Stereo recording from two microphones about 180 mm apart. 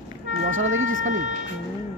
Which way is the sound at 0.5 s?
90° right.